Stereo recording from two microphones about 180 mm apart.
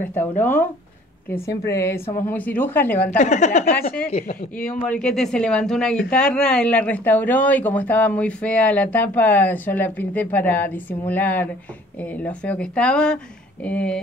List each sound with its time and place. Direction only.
0.4 s speech: 10° left (ahead or behind)
3.1 s speech: 40° left (ahead or behind)
4.6 s speech: 10° left (ahead or behind)